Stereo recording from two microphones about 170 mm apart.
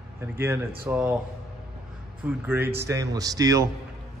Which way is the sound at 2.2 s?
10° right (ahead or behind).